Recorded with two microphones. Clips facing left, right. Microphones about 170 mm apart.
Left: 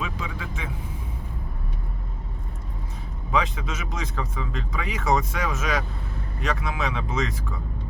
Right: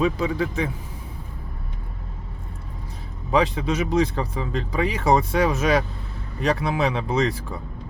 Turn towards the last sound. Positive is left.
turn(degrees=-35)  # may be behind; listen again after turning